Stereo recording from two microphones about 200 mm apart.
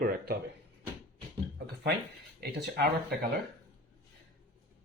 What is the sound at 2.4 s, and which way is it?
Speech, 50° right (ahead or behind).